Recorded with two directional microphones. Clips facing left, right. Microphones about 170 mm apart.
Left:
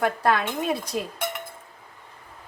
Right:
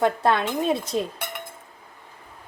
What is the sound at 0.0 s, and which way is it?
A woman's voice, 25° right (ahead or behind).